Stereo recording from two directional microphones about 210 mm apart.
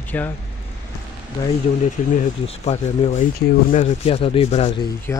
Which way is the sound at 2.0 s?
35° left (ahead or behind).